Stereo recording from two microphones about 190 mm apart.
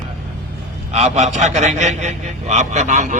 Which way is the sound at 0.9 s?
35° right (ahead or behind).